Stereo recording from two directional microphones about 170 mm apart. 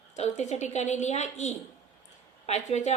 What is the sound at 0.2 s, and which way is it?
A woman's voice, 40° left (ahead or behind).